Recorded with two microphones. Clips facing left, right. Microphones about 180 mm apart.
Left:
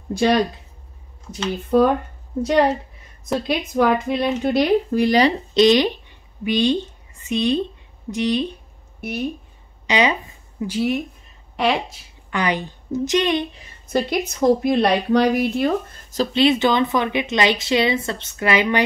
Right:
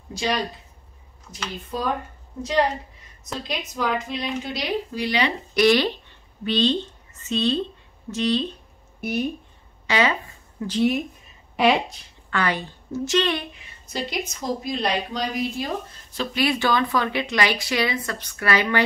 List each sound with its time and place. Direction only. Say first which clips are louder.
0.1 s a woman's voice: left 8 dB; 55° left (ahead or behind)
1.7 s a woman's voice: left 14 dB; 60° left (ahead or behind)
3.3 s a woman's voice: left 9 dB; 60° left (ahead or behind)
5.5 s speech: left 1 dB; 20° left (ahead or behind)
9.0 s speech: even; centre (ahead or behind)
9.8 s a sound: left 3 dB; 20° left (ahead or behind)
10.8 s speech: right 1 dB; centre (ahead or behind)
12.3 s a woman's voice: left 3 dB; 15° left (ahead or behind)
13.8 s a woman's voice: left 8 dB; 55° left (ahead or behind)
16.3 s speech: left 5 dB; 20° left (ahead or behind)